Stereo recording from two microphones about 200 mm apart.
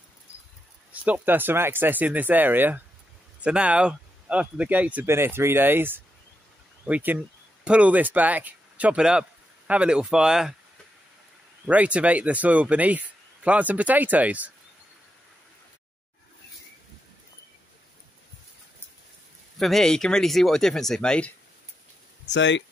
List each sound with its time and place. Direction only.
1.0 s speech: 10° right (ahead or behind)
11.6 s speech: 5° right (ahead or behind)
19.6 s speech: centre (ahead or behind)
22.3 s speech: 65° left (ahead or behind)